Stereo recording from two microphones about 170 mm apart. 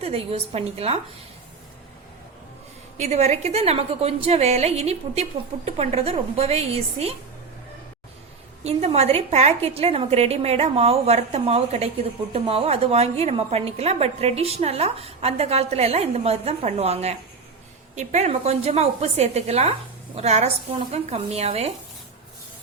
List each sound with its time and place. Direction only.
0.0 s a woman's voice: 35° right (ahead or behind)
3.0 s a woman's voice: 40° right (ahead or behind)
8.6 s a woman's voice: 40° right (ahead or behind)